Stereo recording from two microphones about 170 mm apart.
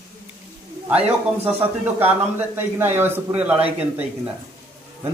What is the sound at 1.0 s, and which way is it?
Speech, 35° right (ahead or behind).